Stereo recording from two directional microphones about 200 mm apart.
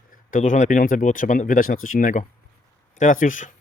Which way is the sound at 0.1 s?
40° left (ahead or behind).